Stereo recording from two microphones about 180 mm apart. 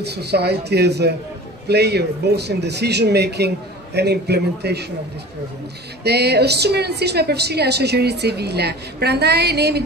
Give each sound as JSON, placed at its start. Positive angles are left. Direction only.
{"t": 0.0, "sound": "a woman's voice", "side_deg": -65}
{"t": 6.0, "sound": "a woman's voice", "side_deg": -65}